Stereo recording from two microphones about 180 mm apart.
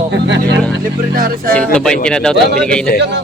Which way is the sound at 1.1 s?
50° right (ahead or behind).